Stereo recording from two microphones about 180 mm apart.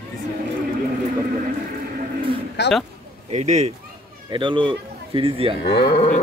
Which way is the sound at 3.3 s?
40° right (ahead or behind).